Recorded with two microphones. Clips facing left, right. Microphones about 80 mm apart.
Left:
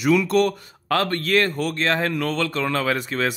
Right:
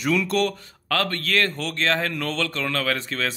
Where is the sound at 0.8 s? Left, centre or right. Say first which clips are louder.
Left 3 dB; centre.